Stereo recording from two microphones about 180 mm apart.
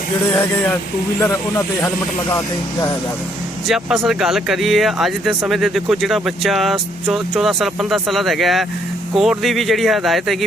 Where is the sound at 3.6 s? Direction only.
Centre (ahead or behind).